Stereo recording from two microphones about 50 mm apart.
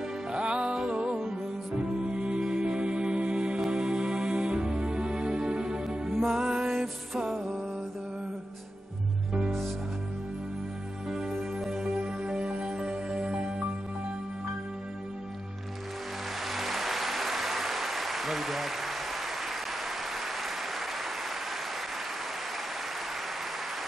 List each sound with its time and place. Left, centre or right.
0.3 s music: centre
6.0 s music: centre
11.1 s music: centre
16.4 s applause: centre